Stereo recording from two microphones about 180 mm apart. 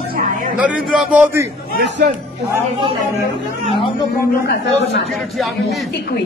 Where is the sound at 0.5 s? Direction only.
5° right (ahead or behind).